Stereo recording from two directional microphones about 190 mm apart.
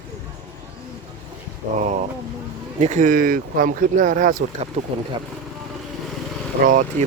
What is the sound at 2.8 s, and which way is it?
Speech, 40° right (ahead or behind).